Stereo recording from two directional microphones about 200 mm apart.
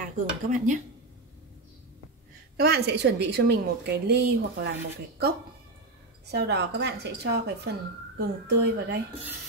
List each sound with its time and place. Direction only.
0.0 s speech: 40° right (ahead or behind)
2.5 s a woman's voice: 55° right (ahead or behind)
6.2 s a woman's voice: 55° right (ahead or behind)